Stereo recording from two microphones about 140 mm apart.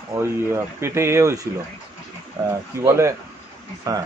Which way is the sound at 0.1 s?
20° right (ahead or behind).